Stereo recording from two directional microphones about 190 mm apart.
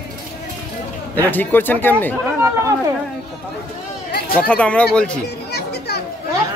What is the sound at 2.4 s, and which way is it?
Speech, 15° right (ahead or behind).